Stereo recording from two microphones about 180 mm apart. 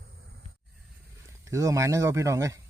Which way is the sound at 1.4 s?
15° right (ahead or behind).